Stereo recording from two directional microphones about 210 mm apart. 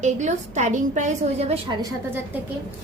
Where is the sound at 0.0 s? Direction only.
35° right (ahead or behind).